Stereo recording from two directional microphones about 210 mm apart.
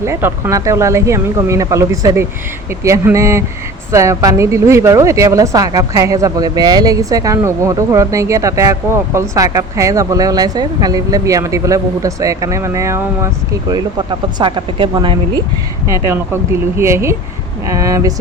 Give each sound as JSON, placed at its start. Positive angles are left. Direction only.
{"t": 0.0, "sound": "speech", "side_deg": -10}